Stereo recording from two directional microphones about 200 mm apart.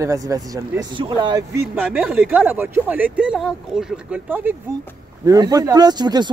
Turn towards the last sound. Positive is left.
turn(degrees=-20)  # may be behind; listen again after turning